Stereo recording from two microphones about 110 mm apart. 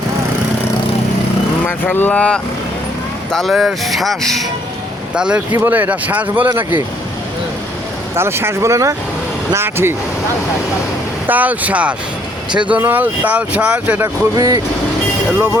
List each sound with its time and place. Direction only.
1.6 s speech: 15° left (ahead or behind)
3.3 s speech: centre (ahead or behind)
5.1 s speech: 10° right (ahead or behind)
8.1 s speech: 20° right (ahead or behind)
11.3 s speech: 15° right (ahead or behind)
14.3 s speech: 35° right (ahead or behind)